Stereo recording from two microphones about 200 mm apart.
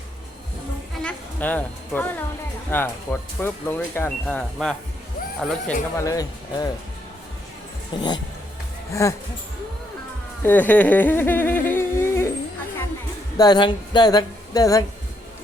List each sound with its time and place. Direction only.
1.0 s a woman's voice: 10° left (ahead or behind)
6.0 s speech: 15° left (ahead or behind)
7.9 s speech: 25° left (ahead or behind)
10.4 s speech: 10° left (ahead or behind)
13.3 s speech: 20° left (ahead or behind)